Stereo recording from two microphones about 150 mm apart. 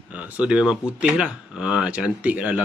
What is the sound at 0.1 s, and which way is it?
Speech, 5° right (ahead or behind).